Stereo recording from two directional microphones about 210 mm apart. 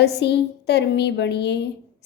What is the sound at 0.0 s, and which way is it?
A woman's voice, 50° left (ahead or behind).